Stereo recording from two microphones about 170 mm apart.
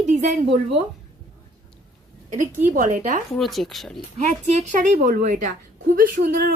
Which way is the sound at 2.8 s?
45° right (ahead or behind).